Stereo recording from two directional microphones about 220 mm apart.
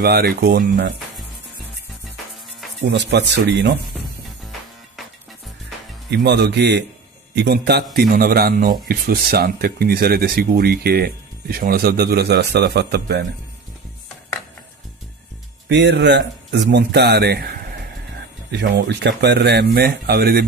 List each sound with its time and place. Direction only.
0.0 s a man's voice: 45° right (ahead or behind)
2.8 s a man's voice: 55° right (ahead or behind)
6.0 s a man's voice: 50° right (ahead or behind)
15.7 s a man's voice: 50° right (ahead or behind)